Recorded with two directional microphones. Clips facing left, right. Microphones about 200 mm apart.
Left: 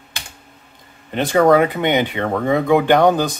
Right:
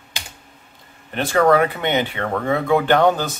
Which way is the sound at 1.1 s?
15° left (ahead or behind).